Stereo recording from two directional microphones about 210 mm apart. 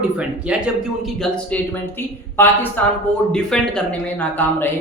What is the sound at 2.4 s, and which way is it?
Speech, 10° left (ahead or behind).